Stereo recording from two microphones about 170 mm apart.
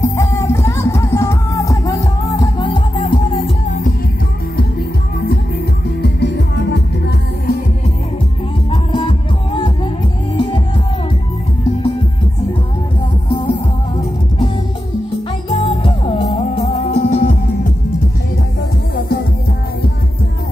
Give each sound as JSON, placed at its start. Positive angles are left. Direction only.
{"t": 0.0, "sound": "music", "side_deg": 15}
{"t": 3.6, "sound": "music", "side_deg": 50}
{"t": 6.0, "sound": "music", "side_deg": 85}
{"t": 8.9, "sound": "music", "side_deg": 30}
{"t": 13.3, "sound": "music", "side_deg": 30}
{"t": 15.5, "sound": "music", "side_deg": 35}
{"t": 17.1, "sound": "music", "side_deg": 50}